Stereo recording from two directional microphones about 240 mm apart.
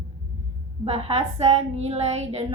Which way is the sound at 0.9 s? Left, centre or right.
Right.